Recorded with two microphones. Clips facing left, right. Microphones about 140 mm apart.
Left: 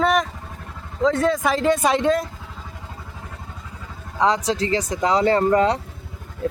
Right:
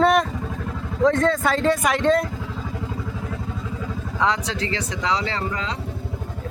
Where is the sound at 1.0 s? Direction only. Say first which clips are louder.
Even; 10° left (ahead or behind).